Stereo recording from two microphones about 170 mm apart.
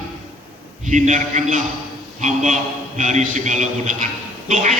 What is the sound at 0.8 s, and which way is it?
A man's voice, 45° right (ahead or behind).